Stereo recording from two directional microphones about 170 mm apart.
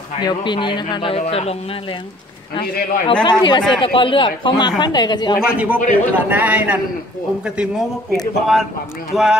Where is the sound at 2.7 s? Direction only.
65° left (ahead or behind).